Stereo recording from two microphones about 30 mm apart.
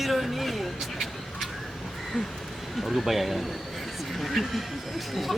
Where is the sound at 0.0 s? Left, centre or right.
Centre.